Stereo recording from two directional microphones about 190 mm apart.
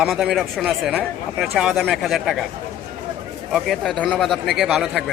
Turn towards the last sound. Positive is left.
turn(degrees=0)  # may be behind; listen again after turning